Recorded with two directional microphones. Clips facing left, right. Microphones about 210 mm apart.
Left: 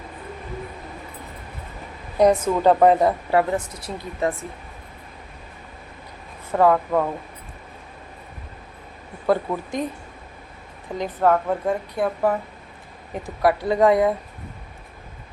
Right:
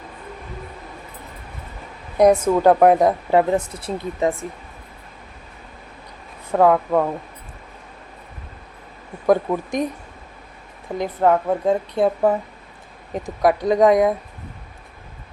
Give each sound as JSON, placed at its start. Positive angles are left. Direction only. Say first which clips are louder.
{"t": 2.1, "sound": "speech", "louder": "right 3 dB", "side_deg": -10}
{"t": 3.5, "sound": "a woman's voice", "louder": "right 5 dB", "side_deg": -25}
{"t": 6.5, "sound": "speech", "louder": "right 2 dB", "side_deg": -10}
{"t": 9.2, "sound": "speech", "louder": "right 4 dB", "side_deg": -15}
{"t": 10.9, "sound": "a woman's voice", "louder": "right 2 dB", "side_deg": -15}